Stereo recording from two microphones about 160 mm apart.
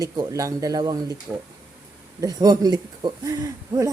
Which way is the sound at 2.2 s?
25° right (ahead or behind).